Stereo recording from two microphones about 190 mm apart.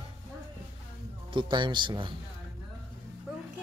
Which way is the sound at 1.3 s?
25° right (ahead or behind).